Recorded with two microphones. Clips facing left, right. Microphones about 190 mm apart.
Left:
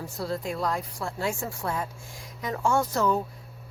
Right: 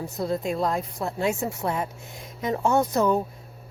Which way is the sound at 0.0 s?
20° right (ahead or behind).